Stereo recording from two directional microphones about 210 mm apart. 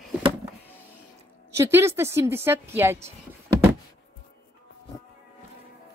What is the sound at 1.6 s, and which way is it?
A woman's voice, 10° right (ahead or behind).